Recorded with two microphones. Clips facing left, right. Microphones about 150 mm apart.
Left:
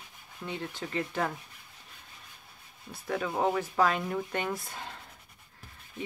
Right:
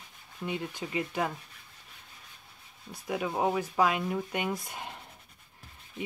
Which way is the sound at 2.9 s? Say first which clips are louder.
Even; 15° right (ahead or behind).